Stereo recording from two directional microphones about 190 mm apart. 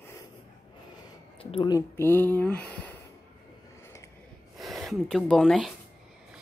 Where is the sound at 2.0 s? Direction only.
10° left (ahead or behind).